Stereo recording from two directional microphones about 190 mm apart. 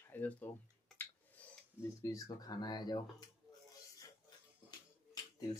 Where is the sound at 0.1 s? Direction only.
10° left (ahead or behind).